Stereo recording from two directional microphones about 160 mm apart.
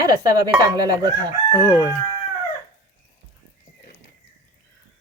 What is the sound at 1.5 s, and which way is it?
Speech, 20° left (ahead or behind).